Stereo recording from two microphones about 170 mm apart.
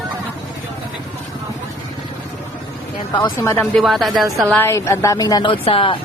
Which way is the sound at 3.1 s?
30° left (ahead or behind).